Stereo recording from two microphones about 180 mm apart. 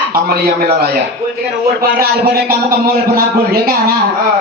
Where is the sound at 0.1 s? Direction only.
60° right (ahead or behind).